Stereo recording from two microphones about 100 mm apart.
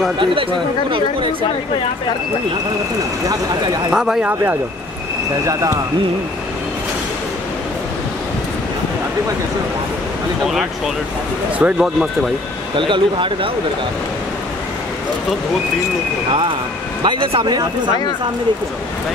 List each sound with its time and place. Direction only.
0.2 s speech: 60° right (ahead or behind)
3.9 s speech: 5° right (ahead or behind)
5.5 s speech: 30° right (ahead or behind)
10.4 s speech: 5° right (ahead or behind)
12.7 s speech: 55° right (ahead or behind)
17.0 s speech: 55° right (ahead or behind)